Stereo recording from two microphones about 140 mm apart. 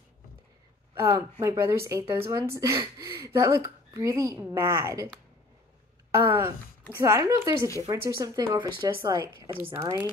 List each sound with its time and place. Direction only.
0.9 s a woman's voice: 20° right (ahead or behind)
6.1 s a woman's voice: 20° right (ahead or behind)